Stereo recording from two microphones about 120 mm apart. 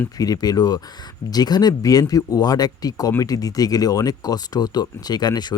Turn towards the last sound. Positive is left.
turn(degrees=35)  # may be behind; listen again after turning